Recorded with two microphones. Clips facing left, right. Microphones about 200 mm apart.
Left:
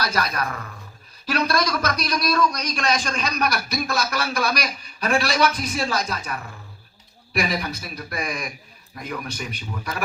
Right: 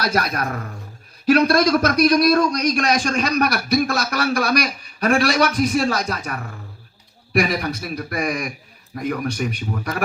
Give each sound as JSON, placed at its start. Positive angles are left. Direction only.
{"t": 0.0, "sound": "a man's voice", "side_deg": -55}
{"t": 7.3, "sound": "a man's voice", "side_deg": -55}